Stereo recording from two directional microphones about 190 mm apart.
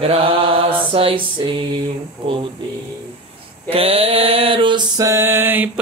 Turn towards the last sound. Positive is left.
turn(degrees=-10)  # may be behind; listen again after turning